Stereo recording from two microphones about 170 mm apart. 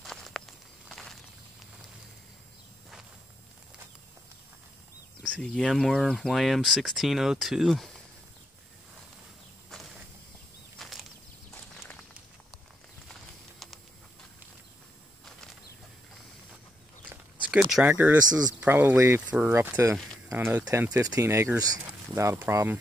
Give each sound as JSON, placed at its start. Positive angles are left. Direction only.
{"t": 0.0, "sound": "walk", "side_deg": 0}
{"t": 5.2, "sound": "speech", "side_deg": 5}
{"t": 10.8, "sound": "a sound", "side_deg": 0}
{"t": 13.1, "sound": "patter", "side_deg": 0}
{"t": 17.1, "sound": "speech", "side_deg": -5}